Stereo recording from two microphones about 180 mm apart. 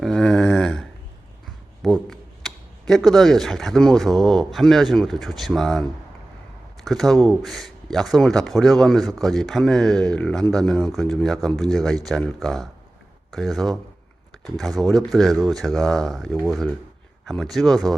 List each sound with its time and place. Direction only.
0.0 s a sound: 5° left (ahead or behind)
1.8 s speech: centre (ahead or behind)
6.8 s speech: centre (ahead or behind)